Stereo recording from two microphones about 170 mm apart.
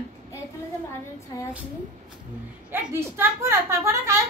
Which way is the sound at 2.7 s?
15° right (ahead or behind).